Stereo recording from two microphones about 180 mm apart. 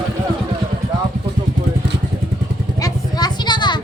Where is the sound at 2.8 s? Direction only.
20° left (ahead or behind).